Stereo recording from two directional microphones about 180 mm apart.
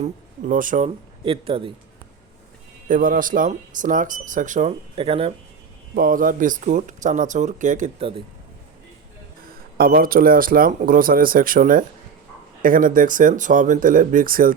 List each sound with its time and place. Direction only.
0.0 s speech: 45° right (ahead or behind)
1.2 s speech: 30° right (ahead or behind)
2.9 s speech: 50° right (ahead or behind)
4.9 s speech: 30° right (ahead or behind)
6.0 s speech: 50° right (ahead or behind)
9.7 s speech: 55° right (ahead or behind)